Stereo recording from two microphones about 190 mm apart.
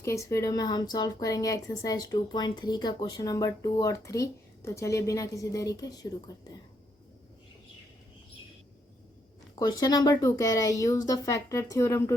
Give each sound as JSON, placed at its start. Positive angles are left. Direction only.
{"t": 0.0, "sound": "a woman's voice", "side_deg": 15}
{"t": 9.6, "sound": "a woman's voice", "side_deg": 20}